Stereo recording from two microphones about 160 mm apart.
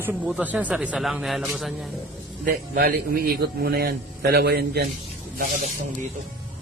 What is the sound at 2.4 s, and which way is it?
A man's voice, 65° right (ahead or behind).